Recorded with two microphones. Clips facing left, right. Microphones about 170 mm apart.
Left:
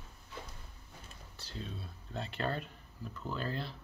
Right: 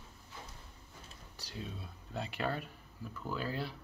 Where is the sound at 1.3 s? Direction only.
15° right (ahead or behind).